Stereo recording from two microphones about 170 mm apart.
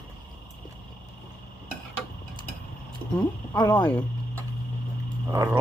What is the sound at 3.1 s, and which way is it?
Speech, 25° left (ahead or behind).